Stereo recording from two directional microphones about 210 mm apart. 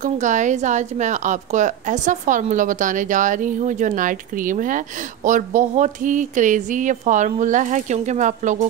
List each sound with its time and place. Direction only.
0.0 s a woman's voice: 35° right (ahead or behind)